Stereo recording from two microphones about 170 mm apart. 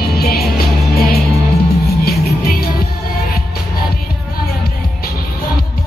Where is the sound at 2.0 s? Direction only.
65° left (ahead or behind).